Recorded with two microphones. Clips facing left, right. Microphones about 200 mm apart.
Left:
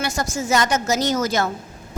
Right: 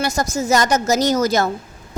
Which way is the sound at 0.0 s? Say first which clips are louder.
Right 4 dB; 40° right (ahead or behind).